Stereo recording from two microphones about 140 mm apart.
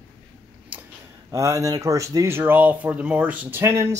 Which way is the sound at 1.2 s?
25° right (ahead or behind).